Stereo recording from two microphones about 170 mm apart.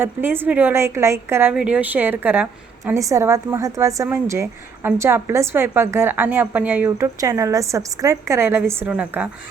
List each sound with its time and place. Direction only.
0.0 s a woman's voice: 10° right (ahead or behind)